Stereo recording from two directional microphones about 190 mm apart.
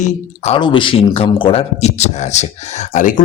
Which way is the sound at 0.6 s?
25° left (ahead or behind).